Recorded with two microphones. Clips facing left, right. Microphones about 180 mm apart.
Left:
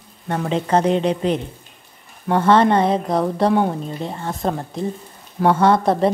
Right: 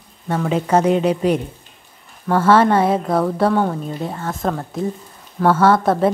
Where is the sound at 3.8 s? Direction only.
5° right (ahead or behind).